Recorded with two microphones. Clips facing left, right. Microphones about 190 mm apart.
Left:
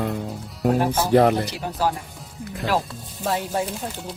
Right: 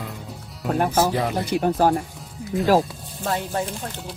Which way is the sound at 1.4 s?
50° right (ahead or behind).